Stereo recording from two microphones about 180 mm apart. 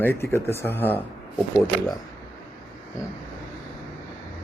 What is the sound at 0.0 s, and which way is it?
A man's voice, 15° left (ahead or behind).